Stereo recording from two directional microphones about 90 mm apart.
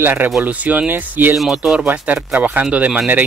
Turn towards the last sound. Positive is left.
turn(degrees=-15)  # may be behind; listen again after turning